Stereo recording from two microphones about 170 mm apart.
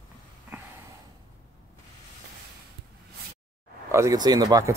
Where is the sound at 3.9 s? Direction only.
20° right (ahead or behind).